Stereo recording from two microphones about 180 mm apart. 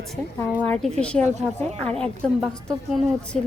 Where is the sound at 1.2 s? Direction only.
40° right (ahead or behind).